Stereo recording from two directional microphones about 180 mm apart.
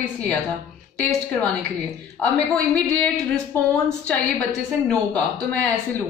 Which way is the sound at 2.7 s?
10° left (ahead or behind).